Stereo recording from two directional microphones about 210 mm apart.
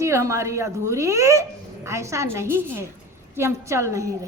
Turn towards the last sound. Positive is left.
turn(degrees=-15)  # may be behind; listen again after turning